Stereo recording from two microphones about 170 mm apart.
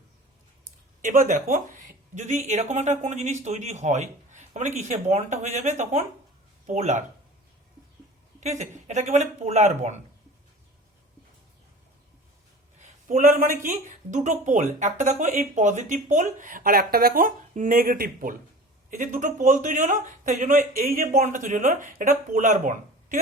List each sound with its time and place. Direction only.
1.0 s a woman's voice: 50° right (ahead or behind)
8.4 s a woman's voice: 45° right (ahead or behind)
12.8 s a woman's voice: 50° right (ahead or behind)